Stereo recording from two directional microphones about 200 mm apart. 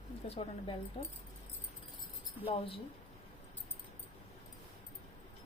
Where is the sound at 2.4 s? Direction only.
25° left (ahead or behind).